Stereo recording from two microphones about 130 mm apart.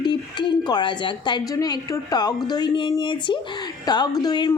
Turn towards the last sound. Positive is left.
turn(degrees=30)  # may be behind; listen again after turning